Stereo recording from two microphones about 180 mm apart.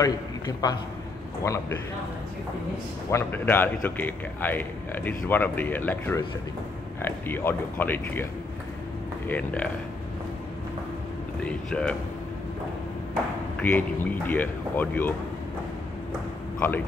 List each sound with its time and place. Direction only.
0.0 s a man's voice: 20° left (ahead or behind)
3.1 s a man's voice: 15° left (ahead or behind)
9.3 s a man's voice: 5° left (ahead or behind)
11.4 s speech: 5° left (ahead or behind)
13.6 s a man's voice: 10° left (ahead or behind)
16.5 s speech: 10° left (ahead or behind)